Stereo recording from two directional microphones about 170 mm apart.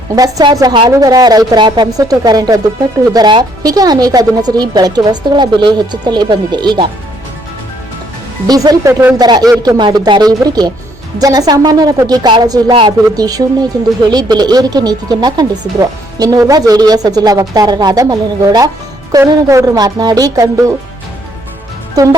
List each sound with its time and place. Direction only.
0.2 s speech: 20° right (ahead or behind)
8.4 s speech: 20° right (ahead or behind)